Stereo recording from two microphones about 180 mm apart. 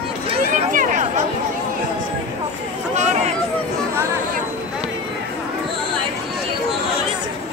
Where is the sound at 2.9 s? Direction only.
40° right (ahead or behind).